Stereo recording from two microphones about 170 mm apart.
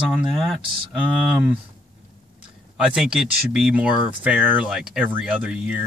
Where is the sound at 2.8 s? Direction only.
5° right (ahead or behind).